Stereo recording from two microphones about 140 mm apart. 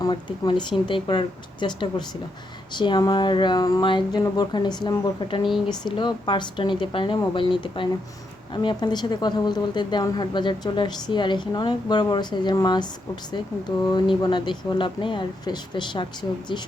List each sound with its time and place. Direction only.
0.0 s a woman's voice: 35° left (ahead or behind)